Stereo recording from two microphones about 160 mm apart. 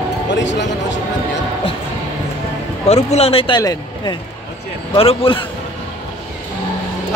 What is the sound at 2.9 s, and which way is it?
A man's voice, 40° left (ahead or behind).